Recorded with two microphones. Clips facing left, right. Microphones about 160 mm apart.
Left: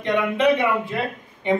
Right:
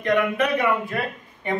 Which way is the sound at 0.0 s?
25° left (ahead or behind).